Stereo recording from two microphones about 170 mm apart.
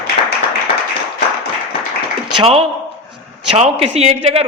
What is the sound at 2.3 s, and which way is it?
A man's voice, 30° right (ahead or behind).